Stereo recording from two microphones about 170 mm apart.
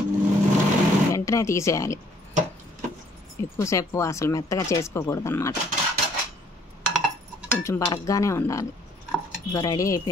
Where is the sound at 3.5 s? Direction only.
15° left (ahead or behind).